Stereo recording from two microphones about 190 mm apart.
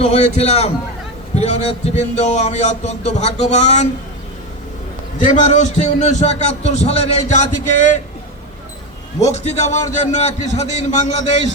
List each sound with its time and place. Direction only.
0.0 s a man's voice: 35° left (ahead or behind)
5.2 s a man's voice: 40° left (ahead or behind)
9.2 s a man's voice: 35° left (ahead or behind)